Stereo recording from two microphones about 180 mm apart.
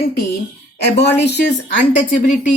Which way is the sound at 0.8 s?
70° left (ahead or behind).